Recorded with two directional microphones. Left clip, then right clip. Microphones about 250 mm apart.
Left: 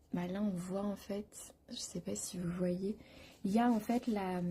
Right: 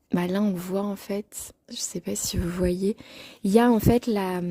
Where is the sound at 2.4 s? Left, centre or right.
Right.